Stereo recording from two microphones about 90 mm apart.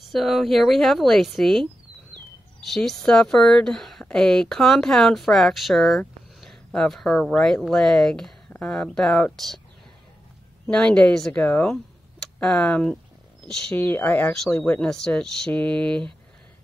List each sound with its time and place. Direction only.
0.1 s speech: centre (ahead or behind)
2.7 s speech: centre (ahead or behind)
10.7 s speech: 10° left (ahead or behind)
13.7 s speech: 20° left (ahead or behind)
14.8 s speech: 10° left (ahead or behind)